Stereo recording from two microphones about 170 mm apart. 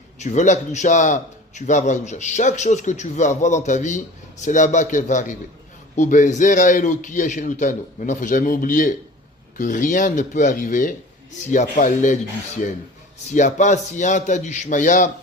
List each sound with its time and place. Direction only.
0.2 s a man's voice: 45° left (ahead or behind)
13.3 s a man's voice: 45° left (ahead or behind)